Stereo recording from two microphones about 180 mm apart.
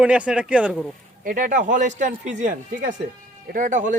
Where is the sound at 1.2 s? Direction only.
50° right (ahead or behind).